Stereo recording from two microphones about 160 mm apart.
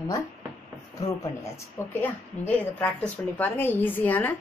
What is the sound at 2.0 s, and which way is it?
A woman's voice, 10° left (ahead or behind).